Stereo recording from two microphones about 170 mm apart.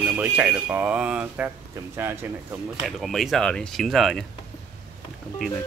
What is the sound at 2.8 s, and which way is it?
Speech, centre (ahead or behind).